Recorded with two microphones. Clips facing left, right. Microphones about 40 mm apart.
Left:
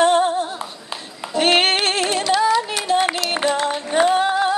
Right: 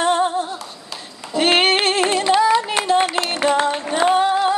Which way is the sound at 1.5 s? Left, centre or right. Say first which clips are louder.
Right 1 dB; right.